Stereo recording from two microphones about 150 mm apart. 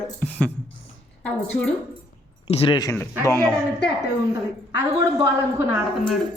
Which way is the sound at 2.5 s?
35° left (ahead or behind).